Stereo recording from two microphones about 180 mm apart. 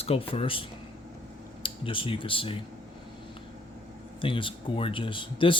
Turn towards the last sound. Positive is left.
turn(degrees=30)  # may be behind; listen again after turning